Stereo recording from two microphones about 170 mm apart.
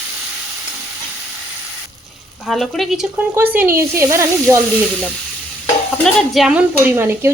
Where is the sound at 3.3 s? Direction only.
10° right (ahead or behind).